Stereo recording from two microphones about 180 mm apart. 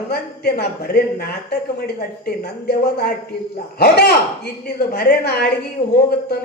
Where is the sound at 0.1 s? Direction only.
60° left (ahead or behind).